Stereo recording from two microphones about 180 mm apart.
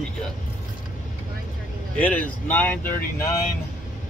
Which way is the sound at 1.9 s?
5° left (ahead or behind).